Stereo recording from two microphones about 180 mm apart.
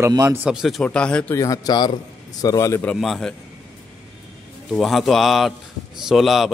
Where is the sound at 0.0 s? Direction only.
15° right (ahead or behind); by 1.4 s 5° left (ahead or behind).